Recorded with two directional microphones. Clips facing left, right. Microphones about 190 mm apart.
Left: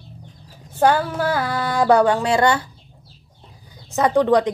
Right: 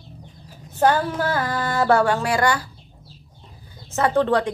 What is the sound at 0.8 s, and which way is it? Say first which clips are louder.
A woman's voice: left 1 dB; 10° left (ahead or behind).